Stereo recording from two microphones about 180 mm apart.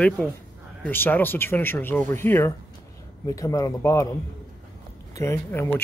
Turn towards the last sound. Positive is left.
turn(degrees=15)  # may be behind; listen again after turning